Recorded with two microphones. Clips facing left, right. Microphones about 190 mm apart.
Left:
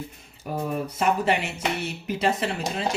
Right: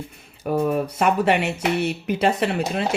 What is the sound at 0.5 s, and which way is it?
Speech, 75° right (ahead or behind).